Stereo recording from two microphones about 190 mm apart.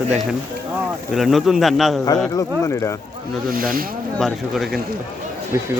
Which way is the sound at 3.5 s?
50° right (ahead or behind).